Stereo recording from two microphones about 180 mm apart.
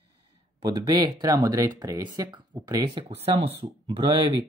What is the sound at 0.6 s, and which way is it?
Speech, 20° right (ahead or behind).